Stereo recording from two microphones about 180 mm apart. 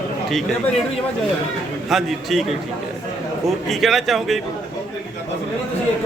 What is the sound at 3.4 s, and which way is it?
Speech, centre (ahead or behind).